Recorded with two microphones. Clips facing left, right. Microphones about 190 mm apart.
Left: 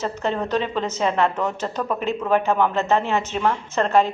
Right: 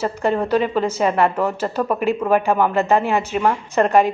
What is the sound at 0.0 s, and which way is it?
A woman's voice, 10° right (ahead or behind).